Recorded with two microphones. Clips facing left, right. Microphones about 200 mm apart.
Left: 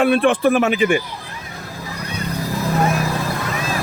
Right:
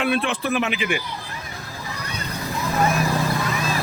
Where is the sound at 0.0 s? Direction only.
50° left (ahead or behind).